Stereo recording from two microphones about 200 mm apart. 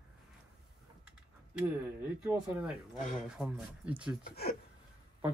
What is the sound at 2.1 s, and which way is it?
Speech, 5° right (ahead or behind).